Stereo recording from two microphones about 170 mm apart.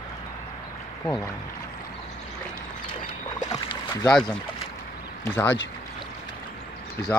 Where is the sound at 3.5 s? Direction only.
20° left (ahead or behind).